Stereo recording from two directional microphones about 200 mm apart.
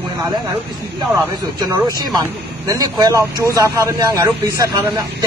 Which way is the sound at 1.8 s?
20° right (ahead or behind).